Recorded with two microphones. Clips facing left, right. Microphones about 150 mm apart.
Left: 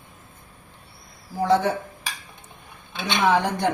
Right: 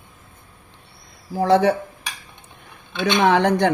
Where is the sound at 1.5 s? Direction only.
90° right.